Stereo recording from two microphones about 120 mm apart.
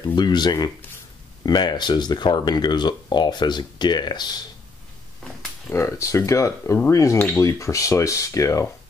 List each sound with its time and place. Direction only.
0.1 s speech: 35° left (ahead or behind)
5.7 s speech: 25° left (ahead or behind)